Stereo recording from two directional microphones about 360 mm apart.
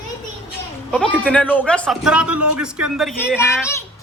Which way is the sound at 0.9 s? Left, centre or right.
Centre.